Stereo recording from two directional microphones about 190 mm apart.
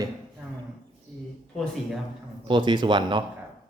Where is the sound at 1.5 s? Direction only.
Centre (ahead or behind).